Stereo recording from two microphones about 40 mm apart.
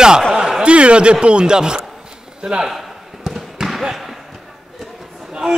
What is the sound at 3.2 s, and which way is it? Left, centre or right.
Basketball bounce, centre.